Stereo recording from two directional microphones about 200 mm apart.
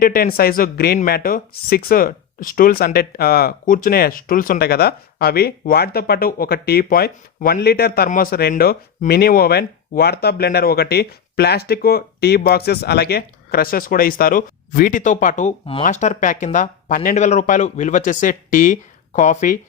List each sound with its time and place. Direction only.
0.0 s speech: 45° left (ahead or behind)